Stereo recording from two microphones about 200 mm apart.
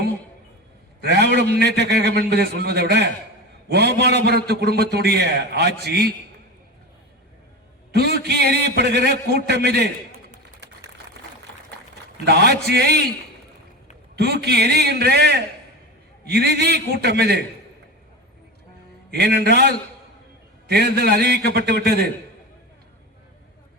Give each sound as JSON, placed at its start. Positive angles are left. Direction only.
{"t": 1.0, "sound": "a man's voice", "side_deg": -55}
{"t": 7.9, "sound": "a man's voice", "side_deg": -50}
{"t": 12.2, "sound": "a man's voice", "side_deg": -55}
{"t": 14.2, "sound": "a man's voice", "side_deg": -55}
{"t": 19.1, "sound": "a man's voice", "side_deg": -55}